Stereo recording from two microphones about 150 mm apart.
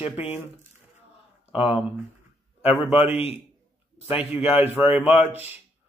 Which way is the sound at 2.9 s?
10° right (ahead or behind).